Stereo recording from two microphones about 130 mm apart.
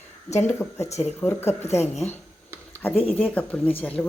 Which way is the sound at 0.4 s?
20° left (ahead or behind).